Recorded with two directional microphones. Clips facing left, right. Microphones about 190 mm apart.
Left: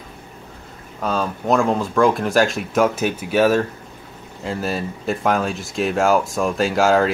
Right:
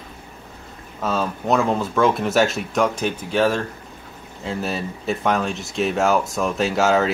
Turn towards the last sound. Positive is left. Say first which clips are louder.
# left 2 dB
turn(degrees=0)  # may be behind; listen again after turning